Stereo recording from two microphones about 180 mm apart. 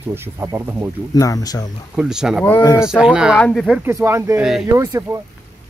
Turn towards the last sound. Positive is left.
turn(degrees=-15)  # may be behind; listen again after turning